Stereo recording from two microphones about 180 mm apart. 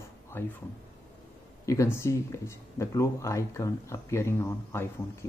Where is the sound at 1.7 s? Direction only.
15° left (ahead or behind).